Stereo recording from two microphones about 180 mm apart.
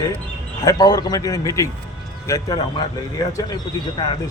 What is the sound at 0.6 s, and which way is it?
Speech, 20° left (ahead or behind).